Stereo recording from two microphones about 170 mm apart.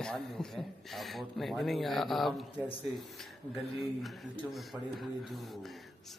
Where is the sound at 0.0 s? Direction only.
5° left (ahead or behind).